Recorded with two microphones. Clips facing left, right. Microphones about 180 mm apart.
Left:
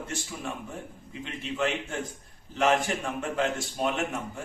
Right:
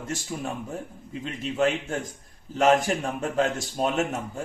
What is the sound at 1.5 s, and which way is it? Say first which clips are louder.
Speech: right 5 dB; 40° right (ahead or behind).